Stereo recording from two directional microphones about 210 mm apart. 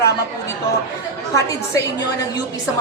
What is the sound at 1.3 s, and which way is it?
A woman's voice, 15° left (ahead or behind).